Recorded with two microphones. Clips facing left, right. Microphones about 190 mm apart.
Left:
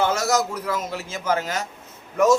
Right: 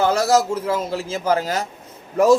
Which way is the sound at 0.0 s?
35° right (ahead or behind).